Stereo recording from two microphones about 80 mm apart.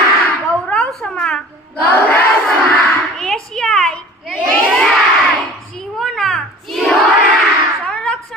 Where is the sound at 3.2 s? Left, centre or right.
Centre.